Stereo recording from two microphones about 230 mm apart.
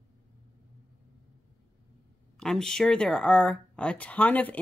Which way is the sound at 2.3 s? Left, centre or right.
Centre.